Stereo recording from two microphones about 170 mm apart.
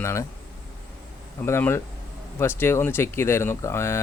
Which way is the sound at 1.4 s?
15° left (ahead or behind).